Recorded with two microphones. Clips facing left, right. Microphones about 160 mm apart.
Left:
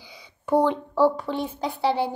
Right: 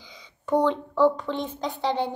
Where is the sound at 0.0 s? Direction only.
10° left (ahead or behind).